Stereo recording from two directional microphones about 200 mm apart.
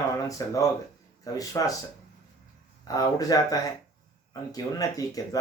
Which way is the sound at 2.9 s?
20° left (ahead or behind).